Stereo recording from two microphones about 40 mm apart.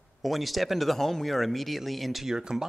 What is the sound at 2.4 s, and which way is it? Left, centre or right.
Speech, centre.